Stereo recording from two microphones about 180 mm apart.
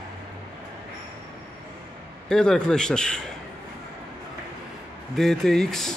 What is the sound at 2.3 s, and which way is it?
Speech, 5° left (ahead or behind).